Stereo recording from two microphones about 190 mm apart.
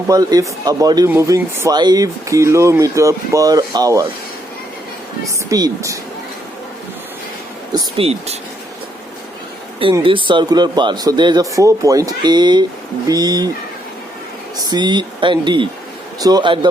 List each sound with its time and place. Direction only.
0.1 s speech: 20° right (ahead or behind)
5.5 s speech: 20° right (ahead or behind)
7.7 s speech: 20° right (ahead or behind)
8.0 s speech: 35° right (ahead or behind)
10.0 s speech: 25° right (ahead or behind)
14.7 s speech: 20° right (ahead or behind)